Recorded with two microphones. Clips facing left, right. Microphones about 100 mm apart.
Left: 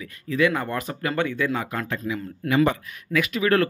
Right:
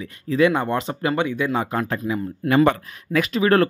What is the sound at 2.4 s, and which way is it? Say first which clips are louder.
Speech: right 4 dB; 60° right (ahead or behind).